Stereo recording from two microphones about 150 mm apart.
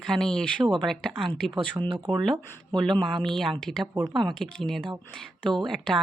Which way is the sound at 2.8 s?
5° left (ahead or behind).